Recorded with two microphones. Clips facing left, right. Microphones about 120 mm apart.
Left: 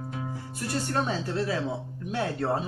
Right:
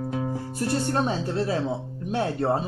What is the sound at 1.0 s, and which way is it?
Speech, 20° right (ahead or behind).